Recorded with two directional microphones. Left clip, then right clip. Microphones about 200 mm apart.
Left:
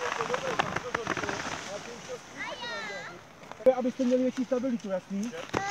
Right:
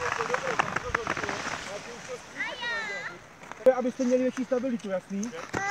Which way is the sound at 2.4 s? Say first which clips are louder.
Right 4 dB; 5° right (ahead or behind).